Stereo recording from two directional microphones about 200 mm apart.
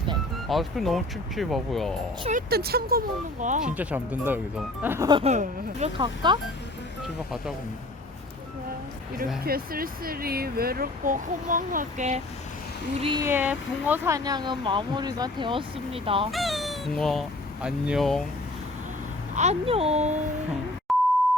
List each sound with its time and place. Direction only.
0.4 s speech: centre (ahead or behind)
2.3 s speech: 50° right (ahead or behind)
3.4 s a child's voice: 40° right (ahead or behind)
3.8 s speech: 10° right (ahead or behind)
5.0 s speech: 25° right (ahead or behind)
5.3 s a child's voice: 35° right (ahead or behind)
6.0 s speech: 20° right (ahead or behind)
9.4 s speech: 50° right (ahead or behind)
13.0 s speech: 25° right (ahead or behind)
13.2 s speech: 10° right (ahead or behind); by 16.3 s 30° right (ahead or behind)
16.3 s speech: centre (ahead or behind)
19.3 s a child's voice: 35° right (ahead or behind)
20.9 s beep: centre (ahead or behind)